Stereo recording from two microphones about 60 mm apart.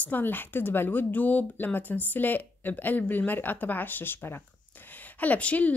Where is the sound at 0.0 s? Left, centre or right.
Left.